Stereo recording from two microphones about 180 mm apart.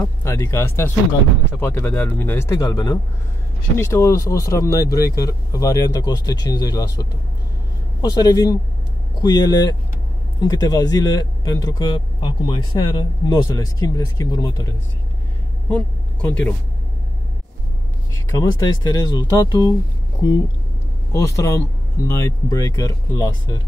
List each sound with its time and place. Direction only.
0.0 s speech: 15° left (ahead or behind)
15.7 s speech: 10° left (ahead or behind)
18.1 s speech: 20° left (ahead or behind)